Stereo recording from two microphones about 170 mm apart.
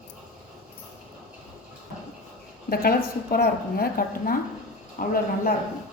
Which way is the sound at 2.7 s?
60° left (ahead or behind).